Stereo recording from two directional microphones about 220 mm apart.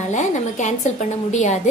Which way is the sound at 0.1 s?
35° left (ahead or behind).